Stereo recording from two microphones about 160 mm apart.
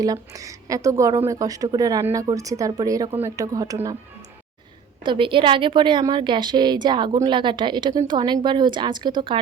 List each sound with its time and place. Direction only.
0.0 s a woman's voice: 20° right (ahead or behind)
5.0 s a woman's voice: 30° right (ahead or behind)